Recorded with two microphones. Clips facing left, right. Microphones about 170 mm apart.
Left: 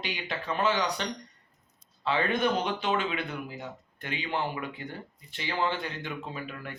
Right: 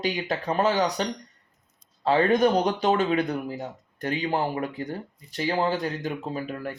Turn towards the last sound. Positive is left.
turn(degrees=-40)  # may be behind; listen again after turning